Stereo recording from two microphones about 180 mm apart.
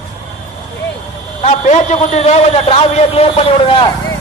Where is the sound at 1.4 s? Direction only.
40° left (ahead or behind).